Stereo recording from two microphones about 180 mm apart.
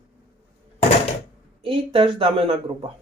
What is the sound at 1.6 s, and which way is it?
Speech, 30° right (ahead or behind).